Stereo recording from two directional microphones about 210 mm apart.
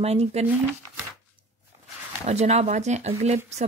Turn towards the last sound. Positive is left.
turn(degrees=-30)  # may be behind; listen again after turning